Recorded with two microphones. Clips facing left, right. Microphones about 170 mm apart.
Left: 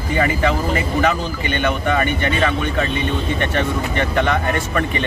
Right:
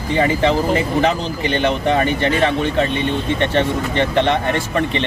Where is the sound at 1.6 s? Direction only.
30° right (ahead or behind).